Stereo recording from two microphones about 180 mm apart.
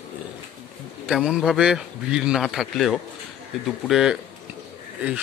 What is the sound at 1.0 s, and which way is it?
A man's voice, 5° right (ahead or behind).